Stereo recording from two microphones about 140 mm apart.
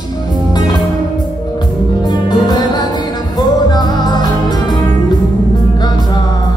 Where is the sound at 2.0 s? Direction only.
30° left (ahead or behind).